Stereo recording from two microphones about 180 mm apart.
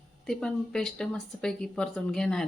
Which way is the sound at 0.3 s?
5° left (ahead or behind).